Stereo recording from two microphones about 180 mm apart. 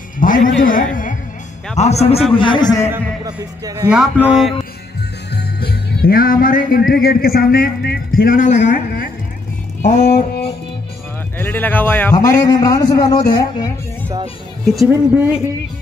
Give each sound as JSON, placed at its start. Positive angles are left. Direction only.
{"t": 0.2, "sound": "speech", "side_deg": 50}
{"t": 1.8, "sound": "a man's voice", "side_deg": 35}
{"t": 3.3, "sound": "speech", "side_deg": -20}
{"t": 3.9, "sound": "speech", "side_deg": -5}
{"t": 5.3, "sound": "music", "side_deg": 65}
{"t": 9.8, "sound": "speech", "side_deg": 40}
{"t": 11.3, "sound": "speech", "side_deg": 10}
{"t": 12.4, "sound": "a man's voice", "side_deg": 20}
{"t": 14.9, "sound": "speech", "side_deg": -10}